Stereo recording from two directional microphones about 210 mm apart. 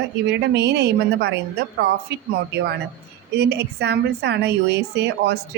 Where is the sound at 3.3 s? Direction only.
50° right (ahead or behind).